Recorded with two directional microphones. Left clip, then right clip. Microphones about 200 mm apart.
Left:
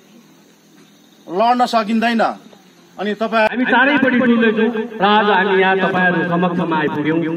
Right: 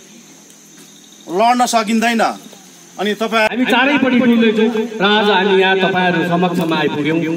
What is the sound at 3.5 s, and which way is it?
A man's voice, 50° right (ahead or behind).